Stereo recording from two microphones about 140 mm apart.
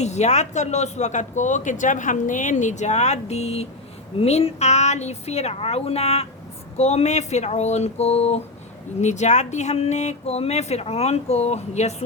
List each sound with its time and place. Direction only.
0.0 s speech: 55° left (ahead or behind)